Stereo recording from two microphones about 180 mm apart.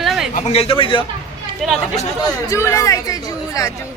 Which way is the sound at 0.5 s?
30° left (ahead or behind).